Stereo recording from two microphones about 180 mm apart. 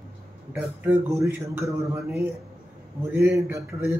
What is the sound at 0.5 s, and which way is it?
A man's voice, 15° right (ahead or behind).